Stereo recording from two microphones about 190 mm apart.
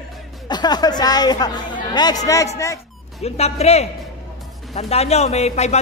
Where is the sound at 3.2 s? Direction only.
35° left (ahead or behind).